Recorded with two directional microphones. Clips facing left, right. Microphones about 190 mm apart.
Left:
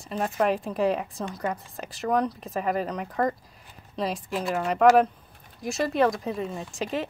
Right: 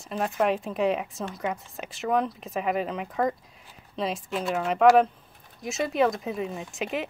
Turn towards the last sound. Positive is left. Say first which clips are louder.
# even
turn(degrees=0)  # may be behind; listen again after turning